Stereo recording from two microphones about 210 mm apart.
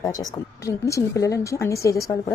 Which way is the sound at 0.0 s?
15° left (ahead or behind).